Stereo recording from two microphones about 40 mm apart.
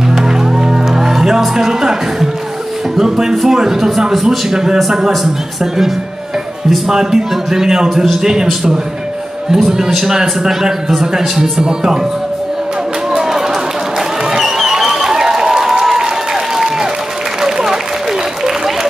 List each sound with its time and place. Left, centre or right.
0.1 s music: centre
1.4 s a man's voice: centre
4.5 s a man's voice: centre
6.9 s a man's voice: centre
9.7 s a man's voice: centre
13.1 s run: centre
13.9 s applause: centre
17.4 s applause: centre